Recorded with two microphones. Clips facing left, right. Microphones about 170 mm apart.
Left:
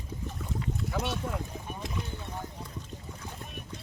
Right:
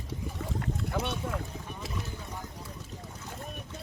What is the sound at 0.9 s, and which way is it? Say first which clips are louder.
Speech: even; centre (ahead or behind).